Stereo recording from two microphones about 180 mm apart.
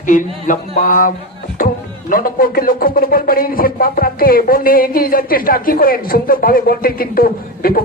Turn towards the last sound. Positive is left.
turn(degrees=55)  # may be behind; listen again after turning